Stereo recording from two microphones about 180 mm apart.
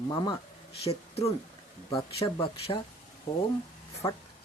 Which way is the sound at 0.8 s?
35° left (ahead or behind).